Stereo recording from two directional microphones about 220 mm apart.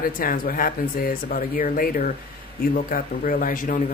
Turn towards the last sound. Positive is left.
turn(degrees=40)  # may be behind; listen again after turning